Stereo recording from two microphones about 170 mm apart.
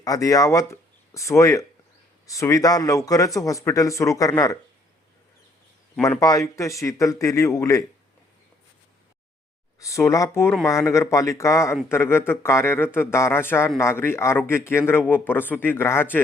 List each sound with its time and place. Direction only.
0.0 s speech: 20° left (ahead or behind)
6.1 s speech: 20° left (ahead or behind)
9.8 s speech: 20° left (ahead or behind)